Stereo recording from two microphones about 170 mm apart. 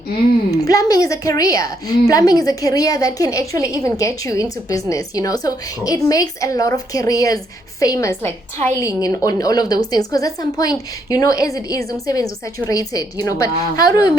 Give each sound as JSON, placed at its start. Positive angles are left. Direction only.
{"t": 0.6, "sound": "a woman's voice", "side_deg": 20}